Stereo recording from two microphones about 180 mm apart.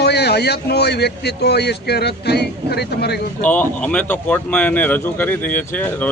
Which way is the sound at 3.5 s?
10° left (ahead or behind).